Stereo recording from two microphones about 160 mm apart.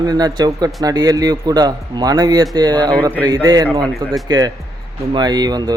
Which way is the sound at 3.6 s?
5° left (ahead or behind).